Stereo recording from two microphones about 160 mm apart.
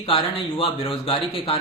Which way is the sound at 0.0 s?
35° left (ahead or behind).